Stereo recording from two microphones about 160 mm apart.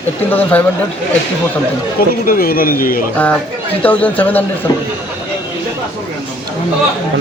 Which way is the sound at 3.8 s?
10° left (ahead or behind).